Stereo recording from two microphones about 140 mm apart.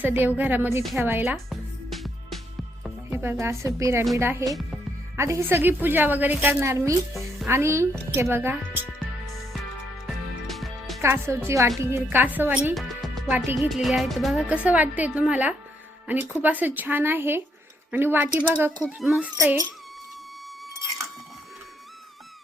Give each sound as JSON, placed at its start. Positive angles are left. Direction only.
{"t": 0.0, "sound": "a woman's voice", "side_deg": -10}
{"t": 3.1, "sound": "a woman's voice", "side_deg": -15}
{"t": 10.4, "sound": "music", "side_deg": 0}
{"t": 11.0, "sound": "a woman's voice", "side_deg": -20}
{"t": 12.7, "sound": "music", "side_deg": 0}
{"t": 13.2, "sound": "a woman's voice", "side_deg": -10}
{"t": 18.9, "sound": "speech", "side_deg": 0}
{"t": 19.4, "sound": "speech", "side_deg": -20}